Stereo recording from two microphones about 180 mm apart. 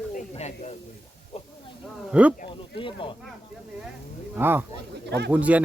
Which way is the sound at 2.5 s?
30° left (ahead or behind).